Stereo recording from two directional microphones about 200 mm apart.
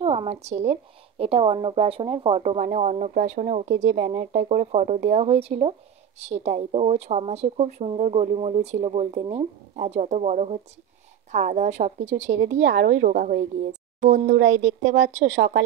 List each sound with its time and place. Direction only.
0.0 s speech: 30° right (ahead or behind)
12.2 s a woman's voice: 65° right (ahead or behind)
13.1 s speech: 45° right (ahead or behind)
14.4 s speech: 75° right (ahead or behind)
15.0 s speech: 35° right (ahead or behind)